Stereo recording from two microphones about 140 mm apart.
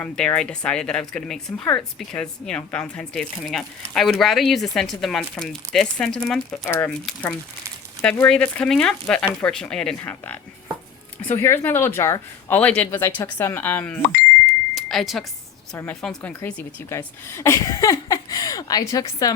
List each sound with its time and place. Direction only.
0.0 s speech: 10° left (ahead or behind)
6.7 s speech: 15° left (ahead or behind)
14.8 s a sound: centre (ahead or behind)
15.7 s a woman's voice: 5° left (ahead or behind); by 19.3 s 25° left (ahead or behind)